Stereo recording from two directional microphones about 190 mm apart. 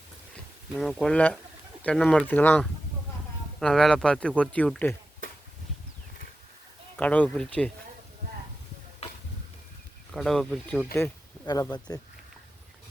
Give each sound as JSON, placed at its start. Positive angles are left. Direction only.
{"t": 0.7, "sound": "speech", "side_deg": 0}
{"t": 6.9, "sound": "speech", "side_deg": 10}
{"t": 9.0, "sound": "a sound", "side_deg": 35}
{"t": 10.1, "sound": "speech", "side_deg": 0}
{"t": 10.9, "sound": "speech", "side_deg": 15}